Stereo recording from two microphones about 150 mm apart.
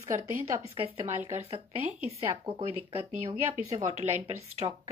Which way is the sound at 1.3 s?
45° right (ahead or behind).